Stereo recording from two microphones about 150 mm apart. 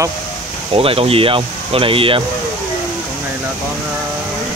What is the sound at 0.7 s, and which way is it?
Speech, 40° right (ahead or behind).